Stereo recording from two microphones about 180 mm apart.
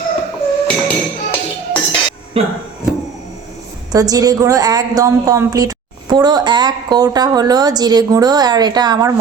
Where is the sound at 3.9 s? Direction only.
20° right (ahead or behind).